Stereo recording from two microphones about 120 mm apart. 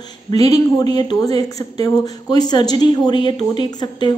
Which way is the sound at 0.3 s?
35° left (ahead or behind).